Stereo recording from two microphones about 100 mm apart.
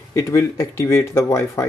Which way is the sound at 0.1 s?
30° left (ahead or behind).